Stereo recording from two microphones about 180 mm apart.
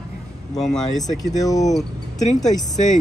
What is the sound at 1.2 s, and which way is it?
Speech, 20° left (ahead or behind).